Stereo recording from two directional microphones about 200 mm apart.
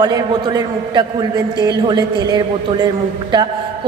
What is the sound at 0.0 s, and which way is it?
A woman's voice, 20° right (ahead or behind).